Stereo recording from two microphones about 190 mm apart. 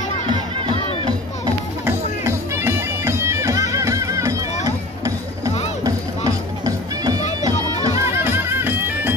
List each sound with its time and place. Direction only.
0.3 s music: 25° right (ahead or behind)
1.9 s bagpipes: 15° right (ahead or behind)
4.6 s a sound: 15° right (ahead or behind)
5.9 s music: 20° right (ahead or behind)